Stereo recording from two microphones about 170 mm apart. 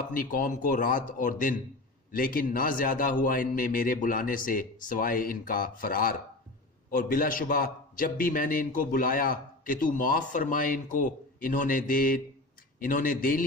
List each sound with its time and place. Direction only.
0.1 s a man's voice: 55° left (ahead or behind)